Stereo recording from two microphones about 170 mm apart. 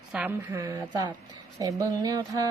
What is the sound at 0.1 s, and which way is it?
Speech, 10° right (ahead or behind).